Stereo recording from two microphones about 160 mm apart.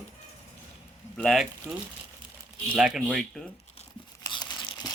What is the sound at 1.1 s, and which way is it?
Speech, 5° left (ahead or behind).